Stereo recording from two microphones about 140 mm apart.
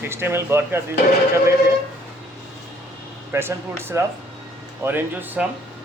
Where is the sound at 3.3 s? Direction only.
15° right (ahead or behind).